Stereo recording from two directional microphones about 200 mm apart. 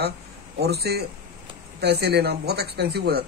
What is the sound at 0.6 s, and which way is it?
Speech, 55° right (ahead or behind).